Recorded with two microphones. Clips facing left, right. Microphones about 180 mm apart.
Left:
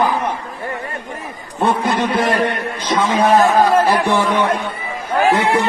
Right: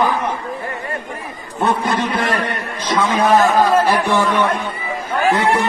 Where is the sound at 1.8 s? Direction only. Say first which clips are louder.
Left 2 dB; 20° left (ahead or behind).